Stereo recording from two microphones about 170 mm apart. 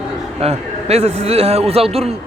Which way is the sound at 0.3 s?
35° right (ahead or behind).